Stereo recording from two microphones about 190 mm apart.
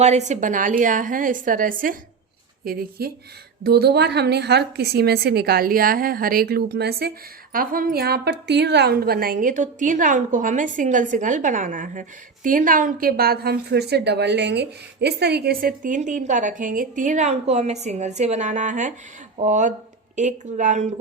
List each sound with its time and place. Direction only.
0.0 s a woman's voice: 35° right (ahead or behind)
3.0 s a woman's voice: 55° right (ahead or behind)